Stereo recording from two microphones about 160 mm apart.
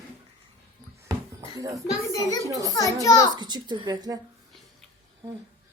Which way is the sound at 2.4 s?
20° right (ahead or behind).